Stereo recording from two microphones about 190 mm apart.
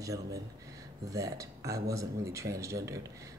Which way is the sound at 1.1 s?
15° right (ahead or behind).